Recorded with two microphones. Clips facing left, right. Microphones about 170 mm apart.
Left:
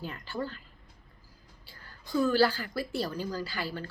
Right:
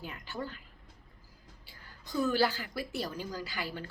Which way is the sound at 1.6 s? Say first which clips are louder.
Left 3 dB; 15° right (ahead or behind).